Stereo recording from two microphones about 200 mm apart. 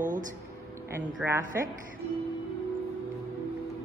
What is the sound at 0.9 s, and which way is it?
Speech, 10° right (ahead or behind).